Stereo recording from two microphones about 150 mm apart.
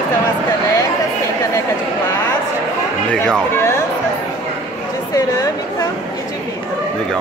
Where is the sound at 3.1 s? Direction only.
5° left (ahead or behind).